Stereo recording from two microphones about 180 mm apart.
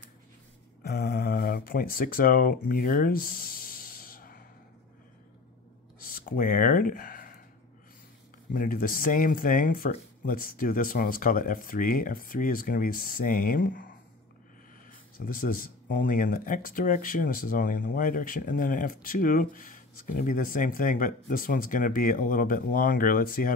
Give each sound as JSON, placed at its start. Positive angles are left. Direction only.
{"t": 0.8, "sound": "a sound", "side_deg": 60}
{"t": 6.0, "sound": "speech", "side_deg": 50}
{"t": 8.5, "sound": "speech", "side_deg": 50}
{"t": 14.9, "sound": "speech", "side_deg": 50}